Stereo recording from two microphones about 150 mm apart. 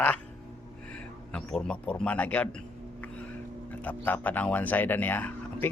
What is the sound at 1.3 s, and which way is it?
Speech, 5° left (ahead or behind).